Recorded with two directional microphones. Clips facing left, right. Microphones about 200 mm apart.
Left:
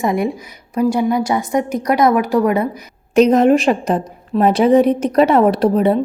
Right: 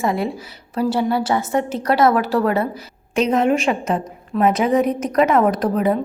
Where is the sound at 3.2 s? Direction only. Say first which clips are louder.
Left 6 dB; 40° left (ahead or behind).